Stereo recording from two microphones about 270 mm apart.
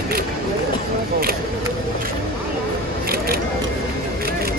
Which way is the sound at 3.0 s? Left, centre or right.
Right.